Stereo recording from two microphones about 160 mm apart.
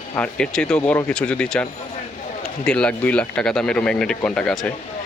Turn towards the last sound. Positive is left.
turn(degrees=5)  # may be behind; listen again after turning